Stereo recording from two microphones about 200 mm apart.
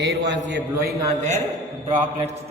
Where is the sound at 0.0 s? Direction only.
60° right (ahead or behind).